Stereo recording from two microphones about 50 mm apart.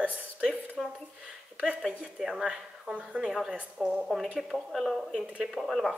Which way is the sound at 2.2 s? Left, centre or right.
Centre.